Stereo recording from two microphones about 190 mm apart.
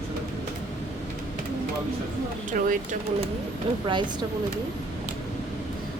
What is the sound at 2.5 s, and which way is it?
Speech, 45° right (ahead or behind).